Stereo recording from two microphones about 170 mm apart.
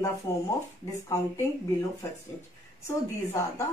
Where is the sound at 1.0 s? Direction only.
15° left (ahead or behind).